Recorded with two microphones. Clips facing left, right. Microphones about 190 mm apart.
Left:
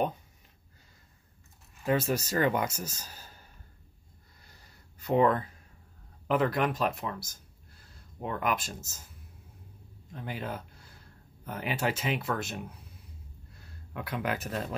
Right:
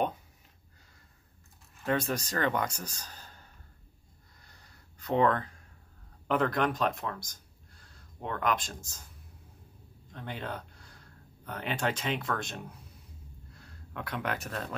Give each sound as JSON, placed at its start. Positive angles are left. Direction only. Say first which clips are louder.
{"t": 1.9, "sound": "speech", "louder": "left 2 dB", "side_deg": 5}
{"t": 4.9, "sound": "speech", "louder": "left 2 dB", "side_deg": 10}
{"t": 10.1, "sound": "speech", "louder": "left 1 dB", "side_deg": 5}
{"t": 13.9, "sound": "speech", "louder": "left 2 dB", "side_deg": 5}